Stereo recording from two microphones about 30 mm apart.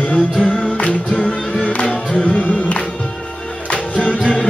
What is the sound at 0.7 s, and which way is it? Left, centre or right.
Music, left.